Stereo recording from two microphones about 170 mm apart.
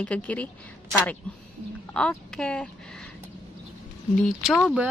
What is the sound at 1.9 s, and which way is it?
Speech, 5° left (ahead or behind).